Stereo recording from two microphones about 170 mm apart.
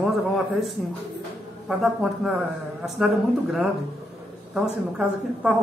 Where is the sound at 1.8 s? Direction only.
5° right (ahead or behind).